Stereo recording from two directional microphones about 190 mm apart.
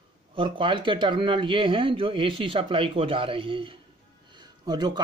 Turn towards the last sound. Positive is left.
turn(degrees=-20)  # may be behind; listen again after turning